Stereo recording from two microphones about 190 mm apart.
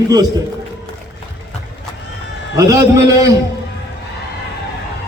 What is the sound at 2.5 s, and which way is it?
Speech, 15° right (ahead or behind).